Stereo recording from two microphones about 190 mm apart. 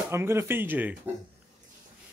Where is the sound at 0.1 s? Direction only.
15° right (ahead or behind).